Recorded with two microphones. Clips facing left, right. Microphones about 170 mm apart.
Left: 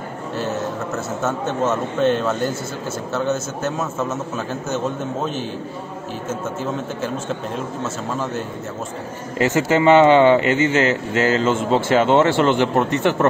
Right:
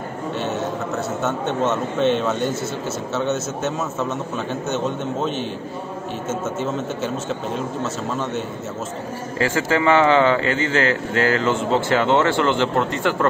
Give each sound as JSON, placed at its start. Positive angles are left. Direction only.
{"t": 0.4, "sound": "a man's voice", "side_deg": 0}
{"t": 6.6, "sound": "a man's voice", "side_deg": 0}
{"t": 9.4, "sound": "a man's voice", "side_deg": 20}